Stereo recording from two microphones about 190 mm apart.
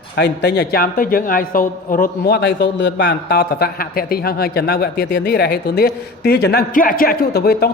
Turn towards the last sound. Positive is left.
turn(degrees=55)  # may be behind; listen again after turning